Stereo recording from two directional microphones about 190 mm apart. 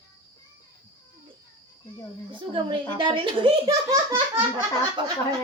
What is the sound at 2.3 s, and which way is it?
A child's voice, 25° right (ahead or behind).